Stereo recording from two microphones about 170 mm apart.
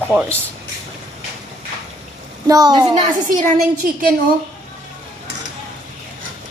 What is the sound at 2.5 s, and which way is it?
Speech, 25° right (ahead or behind).